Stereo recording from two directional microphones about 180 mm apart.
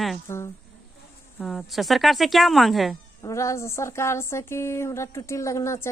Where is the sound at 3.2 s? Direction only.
15° left (ahead or behind).